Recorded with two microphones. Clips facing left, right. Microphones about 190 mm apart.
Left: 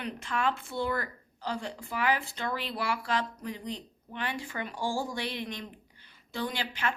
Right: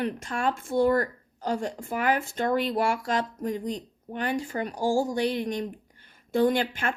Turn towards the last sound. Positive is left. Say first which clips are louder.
# right 9 dB
turn(degrees=-50)  # may be behind; listen again after turning